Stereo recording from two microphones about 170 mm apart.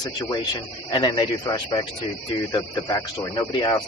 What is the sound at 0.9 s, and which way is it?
Speech, 25° left (ahead or behind).